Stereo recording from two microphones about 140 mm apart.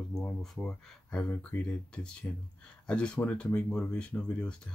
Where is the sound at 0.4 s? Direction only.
5° left (ahead or behind).